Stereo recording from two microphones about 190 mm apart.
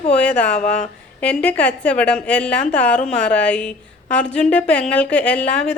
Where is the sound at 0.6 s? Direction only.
40° left (ahead or behind).